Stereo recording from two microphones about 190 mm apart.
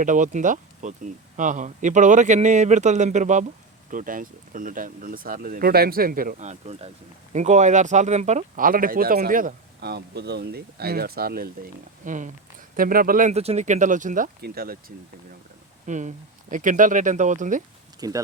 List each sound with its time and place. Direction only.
0.0 s speech: 40° right (ahead or behind)
15.9 s speech: 40° right (ahead or behind)
18.0 s speech: 20° right (ahead or behind)